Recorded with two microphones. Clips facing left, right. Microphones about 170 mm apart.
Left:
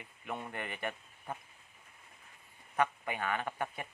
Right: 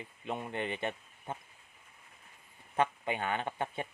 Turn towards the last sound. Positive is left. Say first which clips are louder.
# right 2 dB
turn(degrees=-25)  # may be behind; listen again after turning